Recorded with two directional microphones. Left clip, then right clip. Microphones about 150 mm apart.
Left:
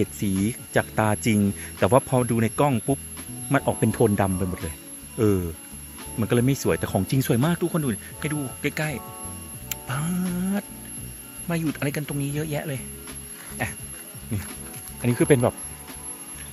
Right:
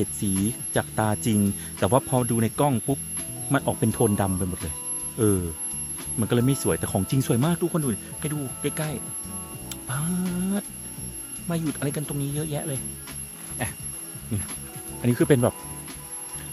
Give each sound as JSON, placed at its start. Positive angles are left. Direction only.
{"t": 0.0, "sound": "speech", "side_deg": 0}
{"t": 9.7, "sound": "music", "side_deg": 0}
{"t": 11.4, "sound": "speech", "side_deg": 0}